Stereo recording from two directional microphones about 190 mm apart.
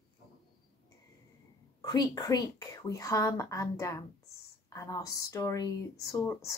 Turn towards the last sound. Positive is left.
turn(degrees=15)  # may be behind; listen again after turning